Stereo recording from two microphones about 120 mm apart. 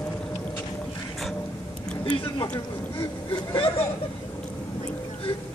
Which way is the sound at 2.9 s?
40° left (ahead or behind).